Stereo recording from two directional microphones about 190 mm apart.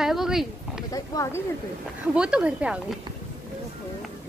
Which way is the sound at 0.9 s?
15° left (ahead or behind).